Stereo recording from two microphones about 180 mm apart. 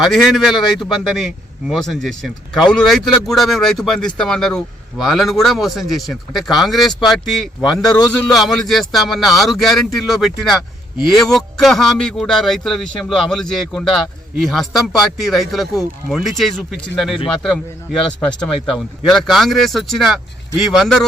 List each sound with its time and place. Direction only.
0.0 s a man's voice: centre (ahead or behind)